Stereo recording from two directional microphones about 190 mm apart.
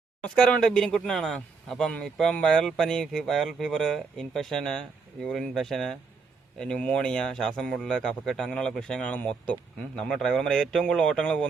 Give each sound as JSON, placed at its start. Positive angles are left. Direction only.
{"t": 0.2, "sound": "speech", "side_deg": 5}